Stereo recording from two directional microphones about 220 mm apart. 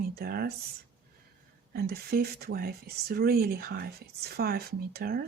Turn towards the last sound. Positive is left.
turn(degrees=-45)  # may be behind; listen again after turning